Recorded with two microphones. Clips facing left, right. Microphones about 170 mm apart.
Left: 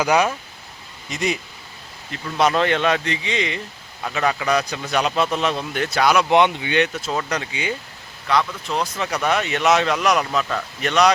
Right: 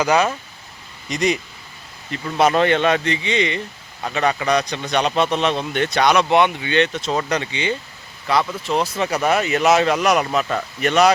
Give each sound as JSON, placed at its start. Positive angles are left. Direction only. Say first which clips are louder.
{"t": 0.0, "sound": "speech", "louder": "right 1 dB", "side_deg": 10}
{"t": 2.4, "sound": "speech", "louder": "right 2 dB", "side_deg": -5}